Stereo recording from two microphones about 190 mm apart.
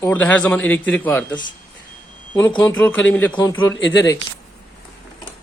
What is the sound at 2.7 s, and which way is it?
Speech, 10° left (ahead or behind).